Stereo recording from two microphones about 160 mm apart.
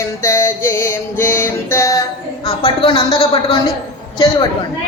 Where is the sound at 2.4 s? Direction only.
35° left (ahead or behind).